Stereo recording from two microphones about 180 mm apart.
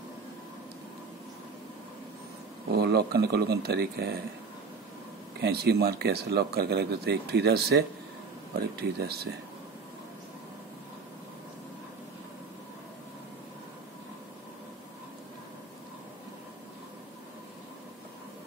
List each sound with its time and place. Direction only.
2.7 s speech: 65° right (ahead or behind)
5.4 s speech: 65° right (ahead or behind)